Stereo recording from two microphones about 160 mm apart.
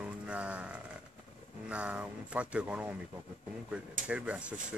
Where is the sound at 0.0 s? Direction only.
5° right (ahead or behind).